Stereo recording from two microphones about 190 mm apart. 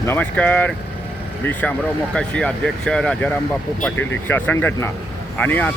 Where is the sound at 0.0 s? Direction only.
10° left (ahead or behind).